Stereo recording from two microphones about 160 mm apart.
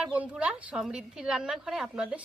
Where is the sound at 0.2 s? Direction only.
10° right (ahead or behind).